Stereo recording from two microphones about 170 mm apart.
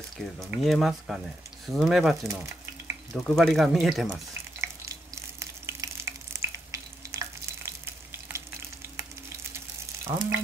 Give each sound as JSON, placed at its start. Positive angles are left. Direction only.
{"t": 0.2, "sound": "speech", "side_deg": 0}
{"t": 2.2, "sound": "frying", "side_deg": -15}
{"t": 3.1, "sound": "speech", "side_deg": 0}
{"t": 4.3, "sound": "frying", "side_deg": -15}
{"t": 10.0, "sound": "frying", "side_deg": -15}